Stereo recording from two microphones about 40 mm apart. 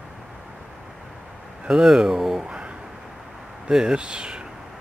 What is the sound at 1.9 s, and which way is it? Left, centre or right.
Speech, centre.